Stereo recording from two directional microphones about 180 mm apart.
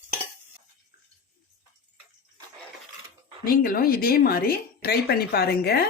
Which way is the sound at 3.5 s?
55° left (ahead or behind).